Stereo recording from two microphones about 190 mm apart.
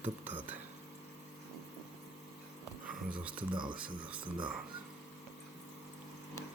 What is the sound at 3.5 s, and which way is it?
Speech, 25° right (ahead or behind).